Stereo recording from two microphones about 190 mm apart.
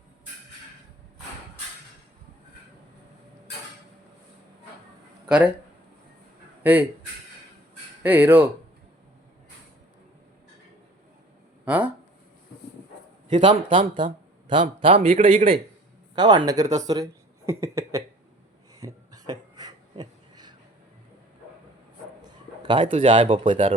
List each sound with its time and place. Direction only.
5.2 s speech: 5° right (ahead or behind)
6.6 s speech: 10° right (ahead or behind)
8.0 s speech: 10° right (ahead or behind)
11.6 s speech: 10° right (ahead or behind)
13.3 s speech: 25° right (ahead or behind)
18.8 s a sound: 20° right (ahead or behind)
22.6 s speech: 25° right (ahead or behind)